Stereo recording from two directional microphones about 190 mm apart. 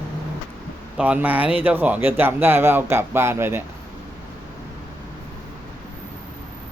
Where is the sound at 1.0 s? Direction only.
10° right (ahead or behind).